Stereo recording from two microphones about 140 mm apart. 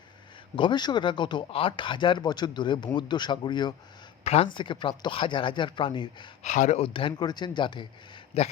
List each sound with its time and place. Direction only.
0.5 s speech: 35° left (ahead or behind)
4.2 s speech: 45° left (ahead or behind)
6.4 s speech: 55° left (ahead or behind); by 7.9 s 35° left (ahead or behind)
8.3 s a man's voice: 45° left (ahead or behind)